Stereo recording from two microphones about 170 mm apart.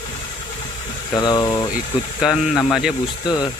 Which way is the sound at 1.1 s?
25° left (ahead or behind).